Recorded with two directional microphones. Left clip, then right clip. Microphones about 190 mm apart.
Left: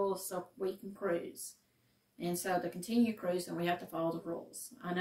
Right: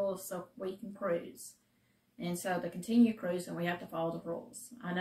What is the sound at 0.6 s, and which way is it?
Speech, 15° right (ahead or behind).